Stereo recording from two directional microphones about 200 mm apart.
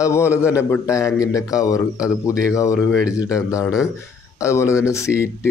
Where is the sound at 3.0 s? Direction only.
5° right (ahead or behind).